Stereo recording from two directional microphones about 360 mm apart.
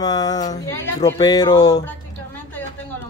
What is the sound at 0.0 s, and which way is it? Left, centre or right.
Speech, centre.